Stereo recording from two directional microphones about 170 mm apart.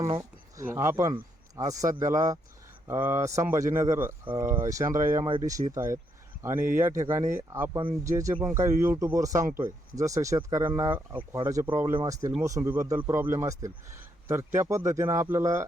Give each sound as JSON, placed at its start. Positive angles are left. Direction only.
{"t": 0.0, "sound": "speech", "side_deg": -20}